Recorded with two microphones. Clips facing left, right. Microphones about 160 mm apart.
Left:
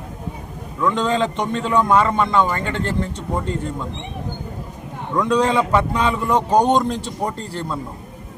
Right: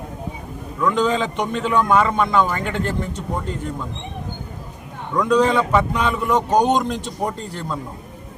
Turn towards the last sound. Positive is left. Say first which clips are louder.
# left 1 dB
turn(degrees=30)  # may be behind; listen again after turning